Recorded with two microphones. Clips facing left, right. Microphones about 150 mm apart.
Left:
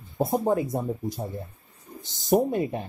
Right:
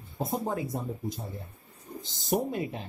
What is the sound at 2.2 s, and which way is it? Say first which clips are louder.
Speech: left 7 dB; 25° left (ahead or behind).